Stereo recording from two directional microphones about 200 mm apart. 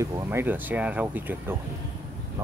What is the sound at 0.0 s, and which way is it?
Speech, 10° right (ahead or behind).